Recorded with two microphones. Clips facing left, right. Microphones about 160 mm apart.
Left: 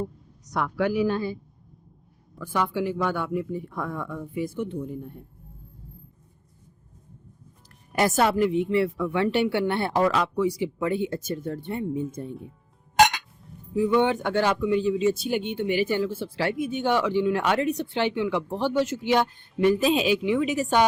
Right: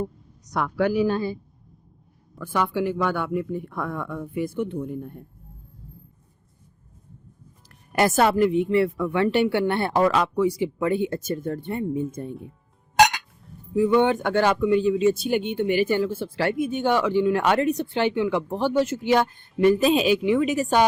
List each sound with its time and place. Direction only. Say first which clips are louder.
0.9 s speech: right 2 dB; 35° right (ahead or behind)
2.4 s speech: right 2 dB; 60° right (ahead or behind)
7.9 s speech: right 2 dB; 55° right (ahead or behind)
13.7 s speech: right 2 dB; 55° right (ahead or behind)